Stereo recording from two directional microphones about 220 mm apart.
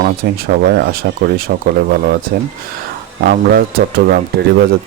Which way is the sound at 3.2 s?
45° right (ahead or behind).